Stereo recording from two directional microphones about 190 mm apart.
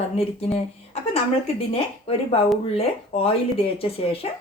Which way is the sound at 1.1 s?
30° left (ahead or behind).